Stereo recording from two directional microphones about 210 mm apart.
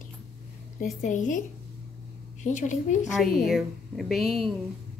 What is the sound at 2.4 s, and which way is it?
Speech, 35° left (ahead or behind).